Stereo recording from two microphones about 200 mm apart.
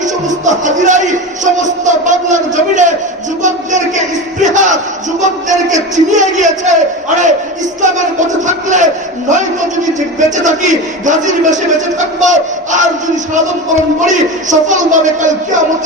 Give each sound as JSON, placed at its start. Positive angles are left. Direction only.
{"t": 0.0, "sound": "a man's voice", "side_deg": -40}
{"t": 3.4, "sound": "crowd", "side_deg": -40}
{"t": 5.2, "sound": "a man's voice", "side_deg": -40}
{"t": 14.1, "sound": "a man's voice", "side_deg": -40}